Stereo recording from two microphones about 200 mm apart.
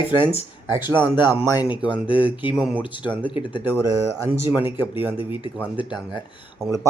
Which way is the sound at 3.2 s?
25° left (ahead or behind).